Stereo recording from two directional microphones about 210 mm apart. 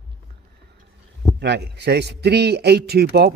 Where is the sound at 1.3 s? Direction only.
55° right (ahead or behind).